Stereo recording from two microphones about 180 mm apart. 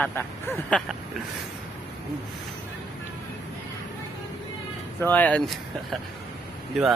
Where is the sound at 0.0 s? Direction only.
10° left (ahead or behind).